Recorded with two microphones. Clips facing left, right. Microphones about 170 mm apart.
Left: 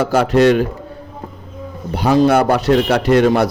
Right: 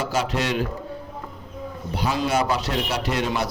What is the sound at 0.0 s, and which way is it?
Speech, 55° left (ahead or behind).